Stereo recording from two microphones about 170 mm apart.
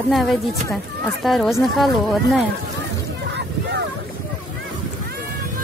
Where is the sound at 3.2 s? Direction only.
90° right.